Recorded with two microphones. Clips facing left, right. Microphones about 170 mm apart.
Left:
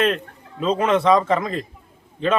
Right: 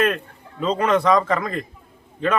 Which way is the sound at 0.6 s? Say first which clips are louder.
Left 1 dB; 25° left (ahead or behind).